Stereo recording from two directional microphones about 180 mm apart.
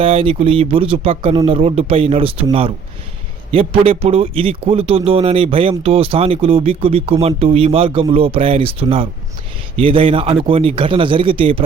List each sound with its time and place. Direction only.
0.0 s speech: 30° right (ahead or behind)